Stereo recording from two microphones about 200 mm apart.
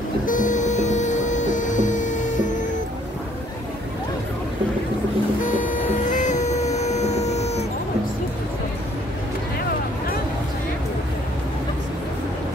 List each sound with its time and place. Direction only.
0.3 s printer: 40° left (ahead or behind)
5.6 s cat: 40° left (ahead or behind)